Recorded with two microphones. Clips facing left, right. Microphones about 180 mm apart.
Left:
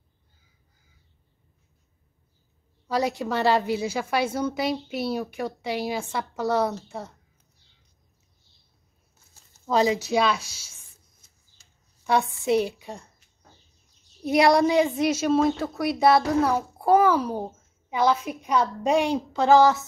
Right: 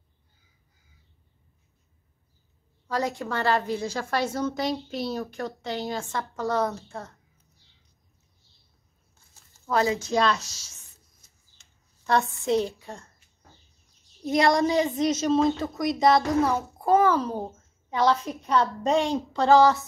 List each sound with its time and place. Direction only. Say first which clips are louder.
2.9 s a woman's voice: left 3 dB; 15° left (ahead or behind)
9.7 s speech: left 2 dB; 15° left (ahead or behind)
10.1 s speech: right 1 dB; 5° left (ahead or behind)
12.0 s a woman's voice: left 1 dB; 10° left (ahead or behind)
14.2 s a woman's voice: left 3 dB; 10° left (ahead or behind)